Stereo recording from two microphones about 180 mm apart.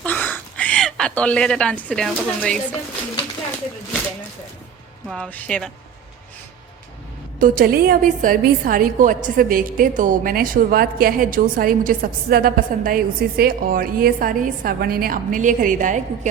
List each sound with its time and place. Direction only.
0.0 s speech: 10° left (ahead or behind)
5.0 s speech: 5° left (ahead or behind)
7.3 s a woman's voice: 50° right (ahead or behind)